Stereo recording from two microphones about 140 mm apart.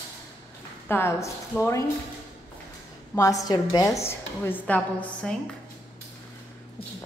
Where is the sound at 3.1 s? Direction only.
25° left (ahead or behind).